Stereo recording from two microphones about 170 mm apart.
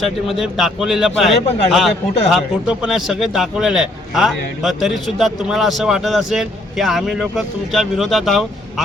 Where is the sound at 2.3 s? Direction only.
5° right (ahead or behind).